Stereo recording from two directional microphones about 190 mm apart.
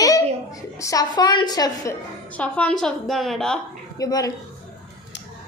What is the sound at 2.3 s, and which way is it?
A child's voice, 5° left (ahead or behind).